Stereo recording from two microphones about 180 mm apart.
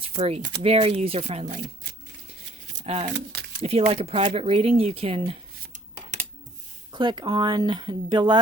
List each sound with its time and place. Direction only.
0.2 s speech: 35° right (ahead or behind)
1.5 s shuffling cards: 65° right (ahead or behind)
2.8 s speech: 35° right (ahead or behind)
3.1 s speech: 65° right (ahead or behind)
3.6 s speech: 35° right (ahead or behind)
6.9 s speech: 25° right (ahead or behind)